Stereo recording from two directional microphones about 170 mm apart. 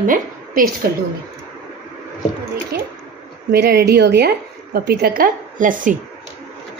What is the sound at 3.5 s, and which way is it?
A woman's voice, 75° right (ahead or behind).